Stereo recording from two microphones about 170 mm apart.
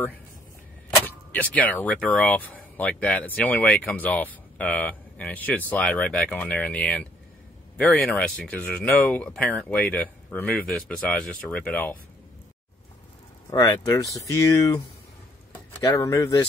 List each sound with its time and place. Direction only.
0.8 s speech: 10° left (ahead or behind)
13.5 s speech: 25° left (ahead or behind)
15.8 s speech: 20° left (ahead or behind)